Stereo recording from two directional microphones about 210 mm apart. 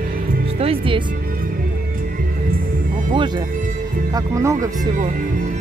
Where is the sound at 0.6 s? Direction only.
25° right (ahead or behind).